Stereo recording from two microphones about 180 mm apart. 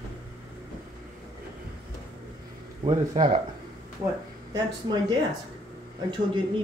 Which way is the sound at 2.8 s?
30° right (ahead or behind).